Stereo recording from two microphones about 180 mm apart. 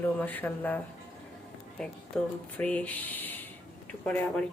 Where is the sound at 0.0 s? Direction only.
10° left (ahead or behind).